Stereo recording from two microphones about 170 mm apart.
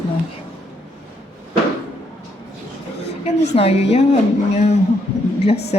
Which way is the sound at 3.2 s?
40° left (ahead or behind).